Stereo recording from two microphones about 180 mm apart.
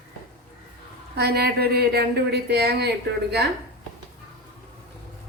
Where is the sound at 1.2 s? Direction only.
65° right (ahead or behind).